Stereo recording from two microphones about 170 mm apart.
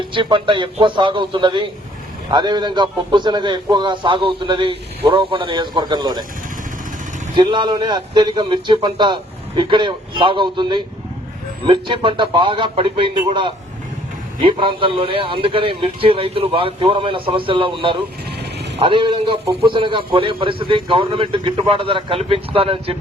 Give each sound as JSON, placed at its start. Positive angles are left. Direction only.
{"t": 0.1, "sound": "a man's voice", "side_deg": -30}
{"t": 7.3, "sound": "a man's voice", "side_deg": -30}